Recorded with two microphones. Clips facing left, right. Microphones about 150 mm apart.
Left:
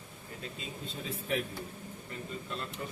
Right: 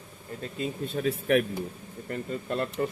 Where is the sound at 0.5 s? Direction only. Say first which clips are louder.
Right 16 dB; 60° right (ahead or behind).